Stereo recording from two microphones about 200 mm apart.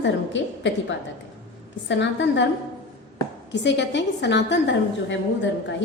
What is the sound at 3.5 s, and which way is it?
A woman's voice, 60° left (ahead or behind).